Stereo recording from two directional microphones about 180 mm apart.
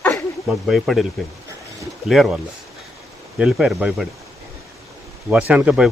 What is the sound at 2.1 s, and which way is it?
Speech, centre (ahead or behind).